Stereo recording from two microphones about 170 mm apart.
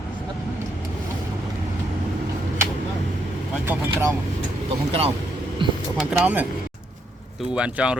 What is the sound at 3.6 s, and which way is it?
Speech, 15° right (ahead or behind).